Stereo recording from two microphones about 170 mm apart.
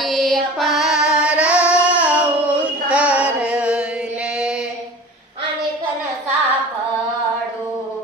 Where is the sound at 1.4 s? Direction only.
15° left (ahead or behind).